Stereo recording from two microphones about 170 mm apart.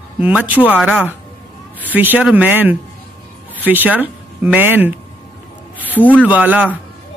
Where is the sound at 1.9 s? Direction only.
10° right (ahead or behind).